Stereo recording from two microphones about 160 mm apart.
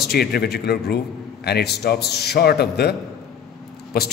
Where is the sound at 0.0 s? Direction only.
75° left (ahead or behind).